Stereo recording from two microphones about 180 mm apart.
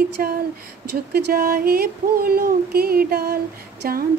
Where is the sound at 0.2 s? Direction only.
50° right (ahead or behind).